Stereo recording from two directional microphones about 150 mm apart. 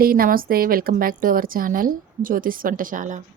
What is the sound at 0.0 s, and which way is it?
A woman's voice, 75° right (ahead or behind).